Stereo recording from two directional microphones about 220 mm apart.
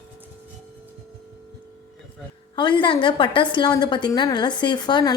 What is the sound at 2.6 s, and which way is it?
A woman's voice, 20° left (ahead or behind).